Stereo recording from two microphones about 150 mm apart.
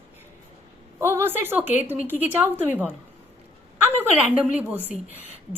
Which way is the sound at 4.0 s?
10° right (ahead or behind).